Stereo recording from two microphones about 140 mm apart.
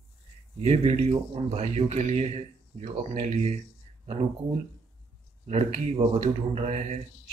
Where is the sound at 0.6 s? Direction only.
45° right (ahead or behind).